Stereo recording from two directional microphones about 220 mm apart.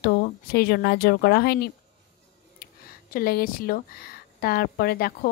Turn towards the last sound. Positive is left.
turn(degrees=45)  # may be behind; listen again after turning